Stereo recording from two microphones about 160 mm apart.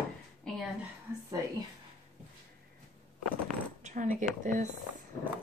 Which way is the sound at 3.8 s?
50° right (ahead or behind).